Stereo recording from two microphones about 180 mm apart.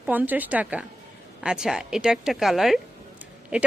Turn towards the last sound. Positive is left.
turn(degrees=-5)  # may be behind; listen again after turning